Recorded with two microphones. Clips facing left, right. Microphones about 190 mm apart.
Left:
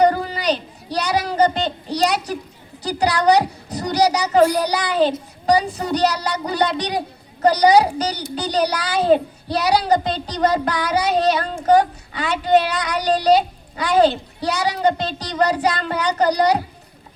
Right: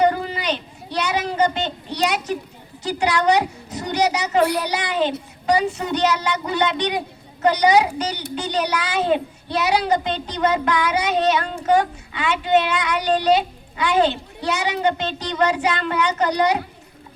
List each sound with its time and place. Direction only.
0.0 s a woman's voice: 40° left (ahead or behind)